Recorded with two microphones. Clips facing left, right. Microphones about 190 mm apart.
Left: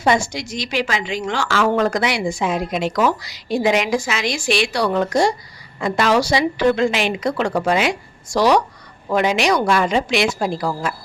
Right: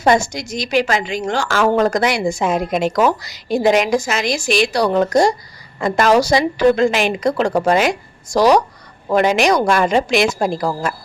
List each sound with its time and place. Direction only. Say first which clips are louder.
0.0 s a woman's voice: right 3 dB; 45° right (ahead or behind)